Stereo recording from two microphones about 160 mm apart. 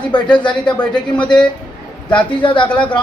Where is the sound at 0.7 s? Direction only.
5° left (ahead or behind).